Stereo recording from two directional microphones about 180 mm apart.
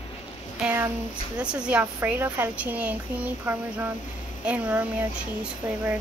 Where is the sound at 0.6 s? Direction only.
10° right (ahead or behind).